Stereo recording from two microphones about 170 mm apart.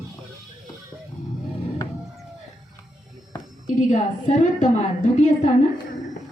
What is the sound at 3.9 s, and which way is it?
A woman's voice, 45° left (ahead or behind).